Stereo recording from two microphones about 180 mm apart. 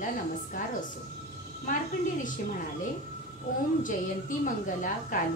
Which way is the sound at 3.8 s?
45° left (ahead or behind).